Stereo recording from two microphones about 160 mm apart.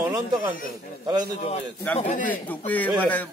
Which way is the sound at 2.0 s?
50° left (ahead or behind).